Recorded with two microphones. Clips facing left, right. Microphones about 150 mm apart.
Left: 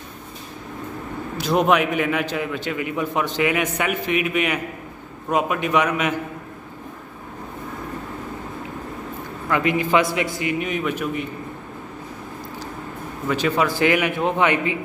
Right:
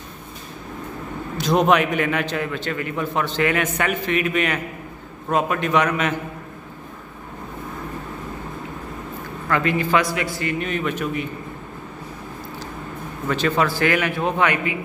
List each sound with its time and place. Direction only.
1.4 s a man's voice: 5° left (ahead or behind)
9.5 s a man's voice: 15° left (ahead or behind)
13.3 s a man's voice: 10° left (ahead or behind); by 14.8 s 25° left (ahead or behind)